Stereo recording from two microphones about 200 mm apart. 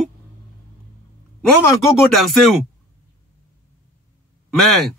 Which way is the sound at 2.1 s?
Centre (ahead or behind).